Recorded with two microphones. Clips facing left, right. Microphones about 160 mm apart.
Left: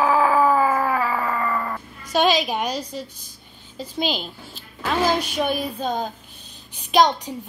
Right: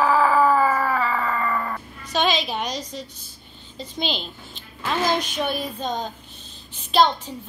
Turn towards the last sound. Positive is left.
turn(degrees=15)  # may be behind; listen again after turning